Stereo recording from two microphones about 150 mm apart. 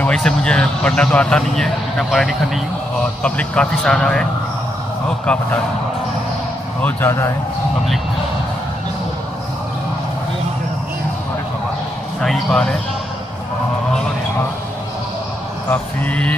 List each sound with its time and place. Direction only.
0.0 s speech: 5° left (ahead or behind)
6.8 s speech: 15° left (ahead or behind)
12.2 s speech: 5° left (ahead or behind)
15.7 s speech: 10° left (ahead or behind)